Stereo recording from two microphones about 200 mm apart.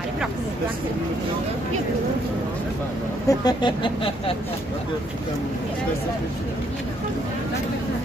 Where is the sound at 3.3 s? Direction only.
20° left (ahead or behind).